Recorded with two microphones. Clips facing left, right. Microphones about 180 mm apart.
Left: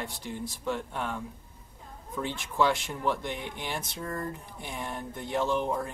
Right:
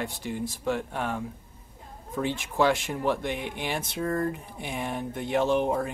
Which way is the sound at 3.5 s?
65° right (ahead or behind).